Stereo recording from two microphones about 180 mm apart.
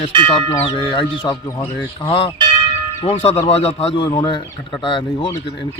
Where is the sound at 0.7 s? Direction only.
25° left (ahead or behind).